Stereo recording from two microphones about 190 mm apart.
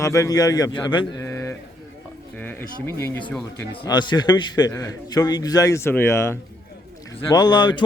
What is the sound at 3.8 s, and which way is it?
Speech, 20° left (ahead or behind).